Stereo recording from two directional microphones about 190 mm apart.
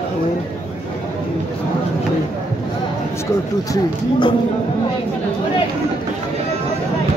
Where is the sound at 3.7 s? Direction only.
25° left (ahead or behind).